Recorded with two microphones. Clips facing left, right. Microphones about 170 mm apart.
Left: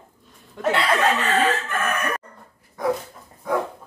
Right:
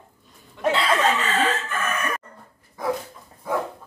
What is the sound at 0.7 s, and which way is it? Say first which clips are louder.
Chicken: left 1 dB; 65° left (ahead or behind).